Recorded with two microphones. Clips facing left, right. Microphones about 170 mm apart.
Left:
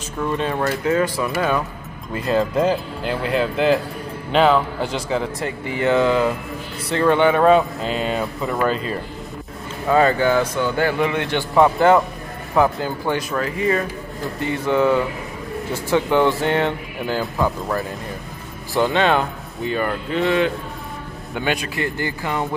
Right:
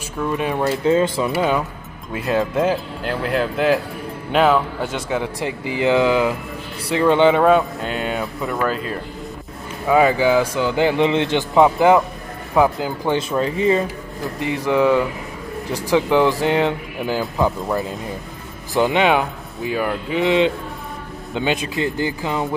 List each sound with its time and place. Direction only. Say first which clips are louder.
0.4 s speech: right 2 dB; 15° right (ahead or behind)
0.8 s speech: right 4 dB; 25° right (ahead or behind)
2.1 s speech: even; centre (ahead or behind)
5.2 s speech: right 1 dB; 15° right (ahead or behind)
7.4 s speech: left 1 dB; centre (ahead or behind); by 13.8 s 25° right (ahead or behind)
14.4 s speech: right 1 dB; 15° right (ahead or behind)
19.1 s speech: right 1 dB; 5° right (ahead or behind)